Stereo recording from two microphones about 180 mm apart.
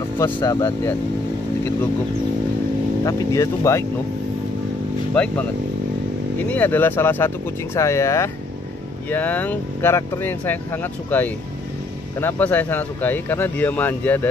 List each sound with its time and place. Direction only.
0.2 s speech: 20° left (ahead or behind)
3.0 s speech: 20° left (ahead or behind)
5.1 s speech: 10° left (ahead or behind)